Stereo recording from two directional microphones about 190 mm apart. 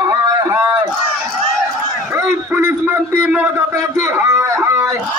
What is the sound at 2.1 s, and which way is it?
A man's voice, 10° right (ahead or behind).